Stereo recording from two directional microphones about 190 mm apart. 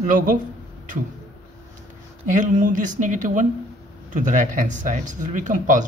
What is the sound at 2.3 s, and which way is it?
Speech, 40° right (ahead or behind).